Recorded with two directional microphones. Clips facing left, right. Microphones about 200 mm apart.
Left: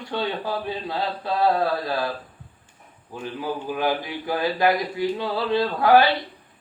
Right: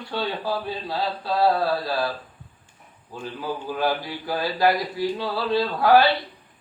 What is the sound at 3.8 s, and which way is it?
Speech, 20° left (ahead or behind).